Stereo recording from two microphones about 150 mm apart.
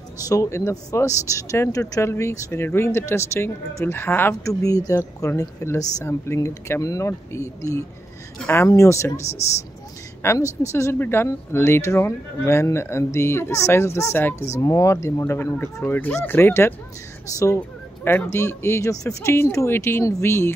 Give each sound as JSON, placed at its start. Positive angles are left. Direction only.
{"t": 0.3, "sound": "speech", "side_deg": 20}
{"t": 8.5, "sound": "speech", "side_deg": 20}
{"t": 10.2, "sound": "speech", "side_deg": 20}